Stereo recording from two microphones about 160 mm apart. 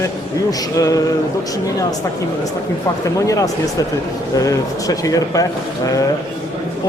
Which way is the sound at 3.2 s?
20° left (ahead or behind).